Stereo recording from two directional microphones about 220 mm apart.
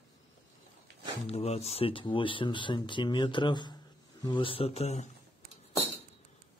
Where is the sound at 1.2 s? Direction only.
30° left (ahead or behind).